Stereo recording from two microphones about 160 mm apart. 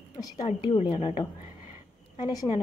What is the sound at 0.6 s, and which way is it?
Speech, 35° left (ahead or behind).